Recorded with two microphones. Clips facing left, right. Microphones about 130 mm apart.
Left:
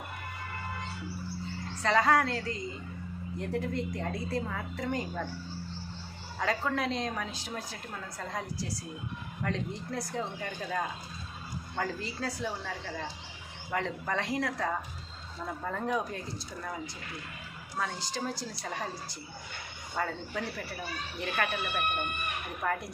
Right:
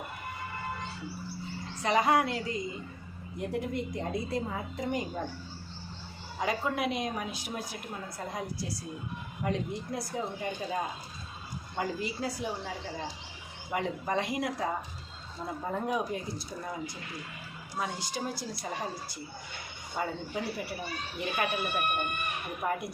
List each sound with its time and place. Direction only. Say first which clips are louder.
1.8 s a woman's voice: even; 15° right (ahead or behind)
6.4 s a woman's voice: even; 15° right (ahead or behind)